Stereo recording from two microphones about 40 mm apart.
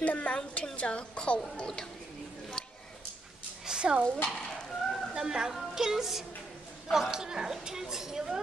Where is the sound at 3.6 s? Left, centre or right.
Right.